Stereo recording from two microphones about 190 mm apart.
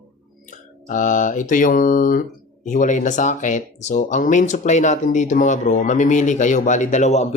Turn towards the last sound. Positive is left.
turn(degrees=35)  # may be behind; listen again after turning